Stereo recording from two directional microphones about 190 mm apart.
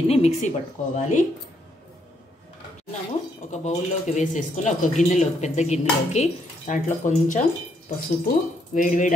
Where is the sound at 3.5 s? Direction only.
40° left (ahead or behind).